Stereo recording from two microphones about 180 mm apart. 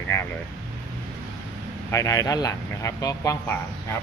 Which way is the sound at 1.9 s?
15° left (ahead or behind).